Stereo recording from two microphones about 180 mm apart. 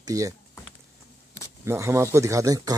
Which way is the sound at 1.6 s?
15° right (ahead or behind).